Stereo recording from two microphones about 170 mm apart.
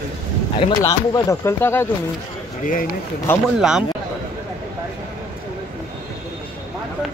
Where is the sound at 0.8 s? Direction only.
20° left (ahead or behind).